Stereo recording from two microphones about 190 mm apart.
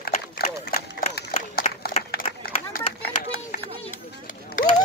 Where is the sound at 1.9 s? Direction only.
50° left (ahead or behind).